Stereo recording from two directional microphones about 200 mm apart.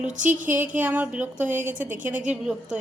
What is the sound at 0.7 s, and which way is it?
A woman's voice, 10° right (ahead or behind).